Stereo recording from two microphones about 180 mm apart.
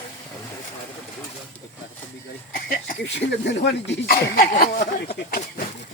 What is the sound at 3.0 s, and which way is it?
Speech, 70° left (ahead or behind).